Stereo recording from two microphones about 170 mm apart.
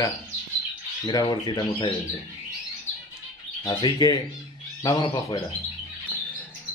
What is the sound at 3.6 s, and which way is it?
Speech, 25° left (ahead or behind).